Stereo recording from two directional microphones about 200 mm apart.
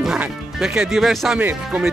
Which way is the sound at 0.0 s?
5° right (ahead or behind).